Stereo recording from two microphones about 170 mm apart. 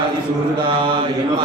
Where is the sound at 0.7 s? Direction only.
30° right (ahead or behind).